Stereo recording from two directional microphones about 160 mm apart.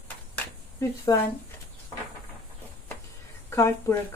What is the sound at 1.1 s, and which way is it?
Speech, 25° left (ahead or behind).